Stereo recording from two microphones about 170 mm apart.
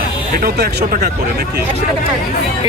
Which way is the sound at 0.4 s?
70° right (ahead or behind).